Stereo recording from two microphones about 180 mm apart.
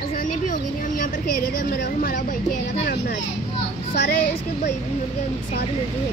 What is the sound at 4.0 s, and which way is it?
Speech, 60° left (ahead or behind).